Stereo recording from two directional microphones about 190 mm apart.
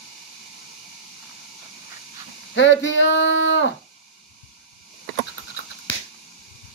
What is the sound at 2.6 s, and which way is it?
Speech, 70° left (ahead or behind).